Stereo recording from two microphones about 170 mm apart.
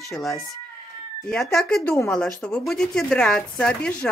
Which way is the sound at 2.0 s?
5° left (ahead or behind).